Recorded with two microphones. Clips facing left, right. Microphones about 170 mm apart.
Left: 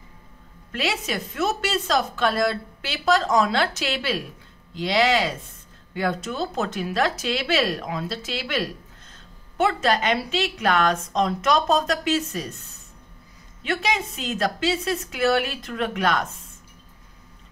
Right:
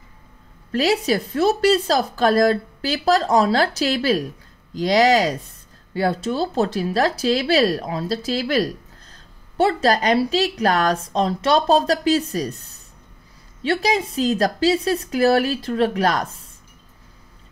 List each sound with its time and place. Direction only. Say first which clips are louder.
0.7 s speech: right 8 dB; 35° right (ahead or behind)
13.6 s speech: right 5 dB; 35° right (ahead or behind)